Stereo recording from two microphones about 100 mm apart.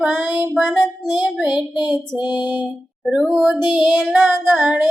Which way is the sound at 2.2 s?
45° left (ahead or behind).